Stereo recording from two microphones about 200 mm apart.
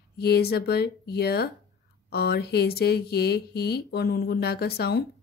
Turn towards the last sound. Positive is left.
turn(degrees=55)  # may be behind; listen again after turning